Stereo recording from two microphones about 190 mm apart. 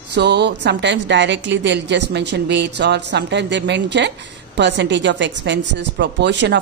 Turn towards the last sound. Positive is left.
turn(degrees=-65)  # may be behind; listen again after turning